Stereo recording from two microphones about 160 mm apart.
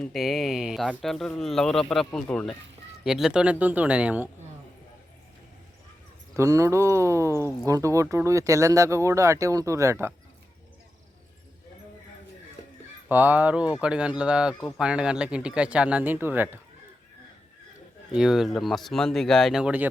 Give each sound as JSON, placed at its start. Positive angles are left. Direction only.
{"t": 0.0, "sound": "speech", "side_deg": 0}
{"t": 6.3, "sound": "speech", "side_deg": -20}
{"t": 13.1, "sound": "speech", "side_deg": -10}
{"t": 18.1, "sound": "speech", "side_deg": -5}